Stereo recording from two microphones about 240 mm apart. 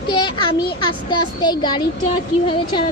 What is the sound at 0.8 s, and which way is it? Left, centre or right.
A woman's voice, centre.